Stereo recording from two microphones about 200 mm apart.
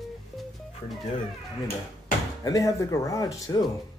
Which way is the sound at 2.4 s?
15° left (ahead or behind).